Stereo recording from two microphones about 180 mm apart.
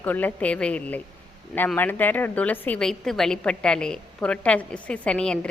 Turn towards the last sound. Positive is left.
turn(degrees=5)  # may be behind; listen again after turning